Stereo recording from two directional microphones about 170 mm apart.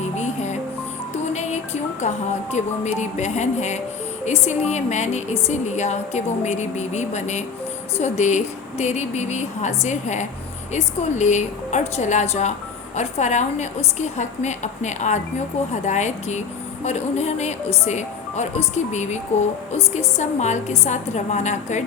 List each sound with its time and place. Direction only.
0.0 s music: 40° left (ahead or behind)
1.3 s a woman's voice: 40° left (ahead or behind)